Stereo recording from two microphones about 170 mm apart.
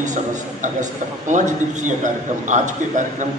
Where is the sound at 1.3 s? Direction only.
45° right (ahead or behind).